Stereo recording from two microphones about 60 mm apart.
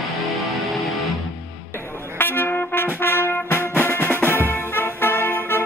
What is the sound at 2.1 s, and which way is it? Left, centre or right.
Music, left.